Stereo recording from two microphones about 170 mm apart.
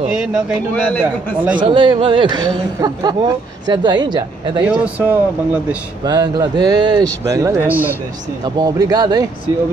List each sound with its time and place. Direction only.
0.0 s a man's voice: 5° right (ahead or behind)
1.7 s speech: 30° right (ahead or behind)
4.6 s speech: 5° right (ahead or behind)
6.0 s speech: 25° right (ahead or behind)
8.5 s speech: 20° right (ahead or behind)